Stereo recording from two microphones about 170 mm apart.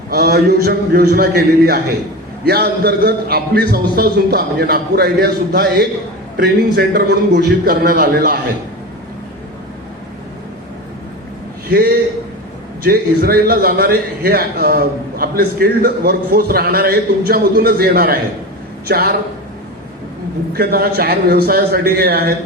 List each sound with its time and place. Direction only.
0.1 s a man's voice: 65° right (ahead or behind)
12.8 s a man's voice: 65° right (ahead or behind)
20.5 s a man's voice: 65° right (ahead or behind)